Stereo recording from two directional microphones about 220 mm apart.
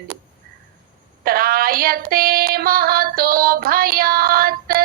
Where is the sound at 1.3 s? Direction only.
40° right (ahead or behind).